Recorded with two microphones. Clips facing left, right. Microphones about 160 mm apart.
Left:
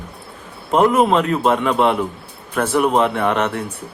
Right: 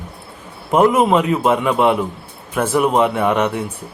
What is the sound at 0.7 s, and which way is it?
Speech, 5° right (ahead or behind).